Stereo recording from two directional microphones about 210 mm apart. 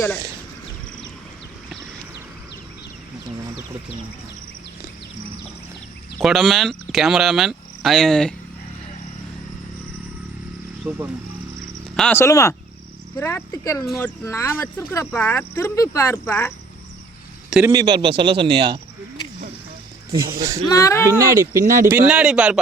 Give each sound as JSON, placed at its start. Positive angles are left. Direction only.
{"t": 6.1, "sound": "speech", "side_deg": 0}
{"t": 10.8, "sound": "speech", "side_deg": -10}
{"t": 11.9, "sound": "speech", "side_deg": 10}
{"t": 17.6, "sound": "speech", "side_deg": -15}
{"t": 20.7, "sound": "speech", "side_deg": 15}
{"t": 21.1, "sound": "speech", "side_deg": -15}
{"t": 21.5, "sound": "speech", "side_deg": -40}
{"t": 21.8, "sound": "speech", "side_deg": -5}